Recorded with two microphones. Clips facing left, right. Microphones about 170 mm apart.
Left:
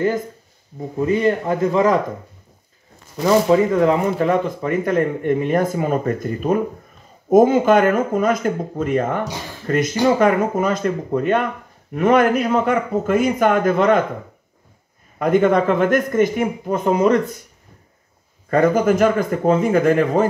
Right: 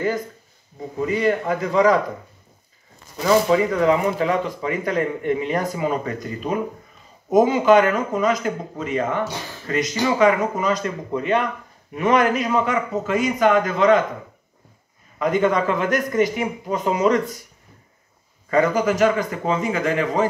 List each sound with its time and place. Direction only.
1.1 s a man's voice: 25° left (ahead or behind)
3.2 s speech: 40° left (ahead or behind)
15.1 s speech: 55° left (ahead or behind)
18.5 s speech: 50° left (ahead or behind)